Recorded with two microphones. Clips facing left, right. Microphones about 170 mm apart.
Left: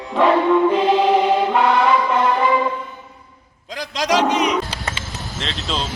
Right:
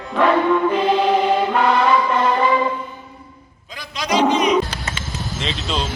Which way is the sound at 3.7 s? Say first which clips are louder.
Left 3 dB; 90° left.